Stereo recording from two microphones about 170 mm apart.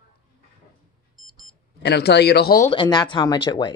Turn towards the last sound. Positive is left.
turn(degrees=25)  # may be behind; listen again after turning